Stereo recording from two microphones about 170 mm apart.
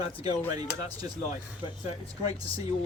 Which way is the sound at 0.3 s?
25° right (ahead or behind).